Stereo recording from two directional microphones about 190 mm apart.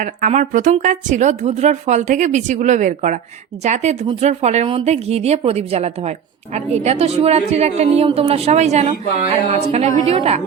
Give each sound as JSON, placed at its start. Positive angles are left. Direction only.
{"t": 0.0, "sound": "speech", "side_deg": -40}